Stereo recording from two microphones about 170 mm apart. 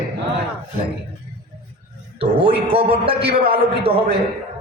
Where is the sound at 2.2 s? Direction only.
35° right (ahead or behind).